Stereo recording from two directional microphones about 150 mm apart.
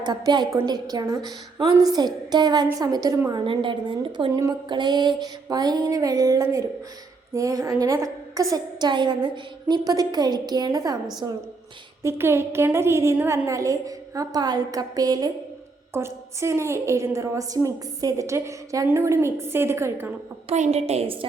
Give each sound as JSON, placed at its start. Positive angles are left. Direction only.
{"t": 0.0, "sound": "a woman's voice", "side_deg": -30}
{"t": 3.4, "sound": "a woman's voice", "side_deg": -35}
{"t": 4.3, "sound": "a woman's voice", "side_deg": -20}
{"t": 12.0, "sound": "a woman's voice", "side_deg": -15}
{"t": 20.5, "sound": "a woman's voice", "side_deg": -45}